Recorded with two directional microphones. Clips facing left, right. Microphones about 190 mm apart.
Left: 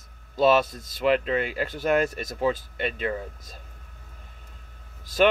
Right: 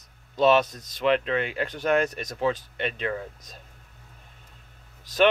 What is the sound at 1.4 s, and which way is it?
Speech, 5° left (ahead or behind).